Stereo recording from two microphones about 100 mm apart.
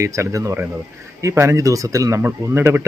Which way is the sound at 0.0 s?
30° right (ahead or behind).